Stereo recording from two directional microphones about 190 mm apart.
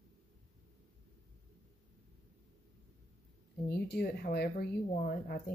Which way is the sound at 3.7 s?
55° left (ahead or behind).